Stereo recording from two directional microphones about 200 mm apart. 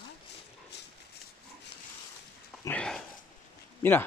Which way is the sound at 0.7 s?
55° left (ahead or behind).